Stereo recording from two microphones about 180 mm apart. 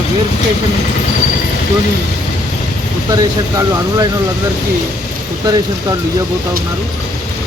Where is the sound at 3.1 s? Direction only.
20° right (ahead or behind).